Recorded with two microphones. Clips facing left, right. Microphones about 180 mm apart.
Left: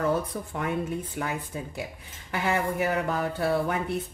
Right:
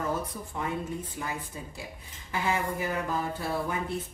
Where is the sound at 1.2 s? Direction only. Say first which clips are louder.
Left 6 dB; 70° left (ahead or behind).